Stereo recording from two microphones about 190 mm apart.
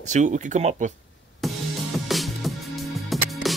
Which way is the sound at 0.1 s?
40° right (ahead or behind).